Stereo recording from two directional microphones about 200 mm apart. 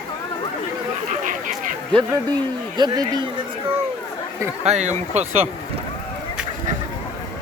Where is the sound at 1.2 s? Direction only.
40° right (ahead or behind).